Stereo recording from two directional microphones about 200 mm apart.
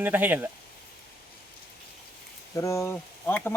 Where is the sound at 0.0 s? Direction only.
10° right (ahead or behind).